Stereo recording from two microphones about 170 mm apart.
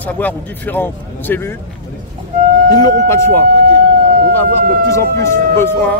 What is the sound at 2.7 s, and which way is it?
Speech, 20° left (ahead or behind).